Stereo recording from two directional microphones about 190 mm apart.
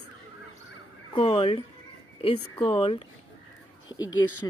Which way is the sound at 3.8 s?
20° left (ahead or behind).